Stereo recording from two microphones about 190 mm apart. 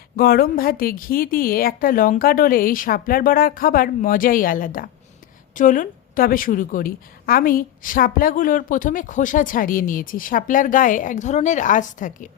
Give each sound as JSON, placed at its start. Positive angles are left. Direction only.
{"t": 0.2, "sound": "a woman's voice", "side_deg": 50}